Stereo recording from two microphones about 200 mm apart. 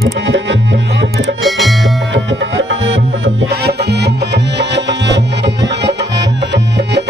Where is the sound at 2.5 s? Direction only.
70° right (ahead or behind).